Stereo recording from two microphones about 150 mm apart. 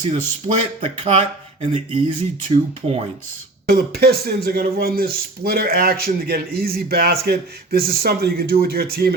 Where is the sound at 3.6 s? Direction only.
90° right.